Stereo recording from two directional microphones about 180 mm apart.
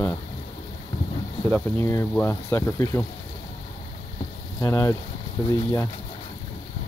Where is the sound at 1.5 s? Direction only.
15° left (ahead or behind).